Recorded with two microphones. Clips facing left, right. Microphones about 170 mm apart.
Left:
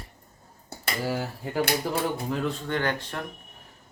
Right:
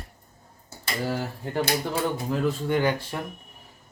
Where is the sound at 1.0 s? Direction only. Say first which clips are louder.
Right 1 dB; 5° left (ahead or behind).